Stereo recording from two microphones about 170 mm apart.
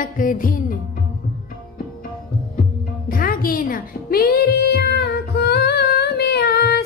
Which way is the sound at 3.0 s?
55° left (ahead or behind).